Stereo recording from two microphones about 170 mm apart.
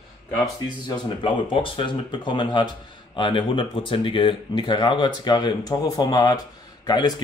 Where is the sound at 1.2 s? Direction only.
30° left (ahead or behind).